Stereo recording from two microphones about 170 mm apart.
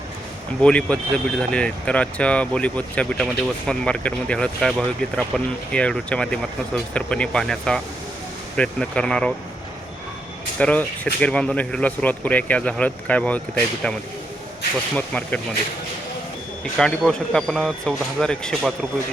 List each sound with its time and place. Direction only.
0.6 s speech: 5° left (ahead or behind)
10.6 s speech: 10° left (ahead or behind)
16.7 s speech: centre (ahead or behind)